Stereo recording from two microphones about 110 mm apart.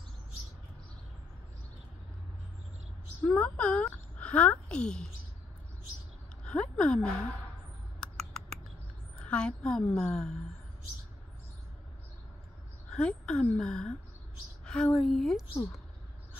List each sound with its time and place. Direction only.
3.3 s speech: 10° left (ahead or behind)
6.4 s speech: 10° left (ahead or behind)
8.0 s rodents: 5° left (ahead or behind)
9.1 s a woman's voice: 10° left (ahead or behind)
12.9 s a woman's voice: 10° left (ahead or behind)